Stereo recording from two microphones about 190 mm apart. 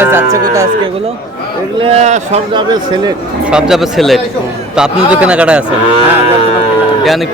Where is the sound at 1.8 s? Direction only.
35° right (ahead or behind).